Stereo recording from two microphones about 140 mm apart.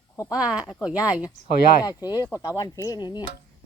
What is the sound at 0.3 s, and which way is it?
Speech, 10° right (ahead or behind).